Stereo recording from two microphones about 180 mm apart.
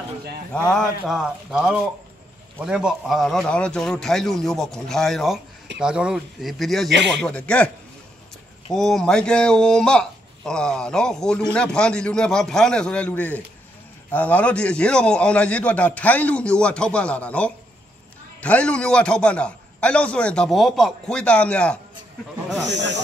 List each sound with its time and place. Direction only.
0.7 s a man's voice: centre (ahead or behind)
8.7 s a man's voice: centre (ahead or behind)
22.7 s speech: 80° right